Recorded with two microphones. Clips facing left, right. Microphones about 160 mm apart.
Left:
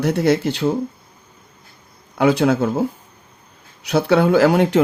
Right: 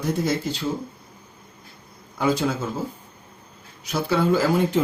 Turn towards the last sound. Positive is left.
turn(degrees=70)  # may be behind; listen again after turning